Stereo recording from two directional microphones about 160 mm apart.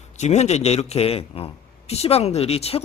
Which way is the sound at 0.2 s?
45° left (ahead or behind).